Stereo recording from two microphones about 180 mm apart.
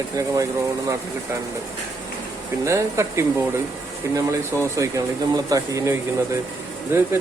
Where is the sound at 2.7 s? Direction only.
15° right (ahead or behind).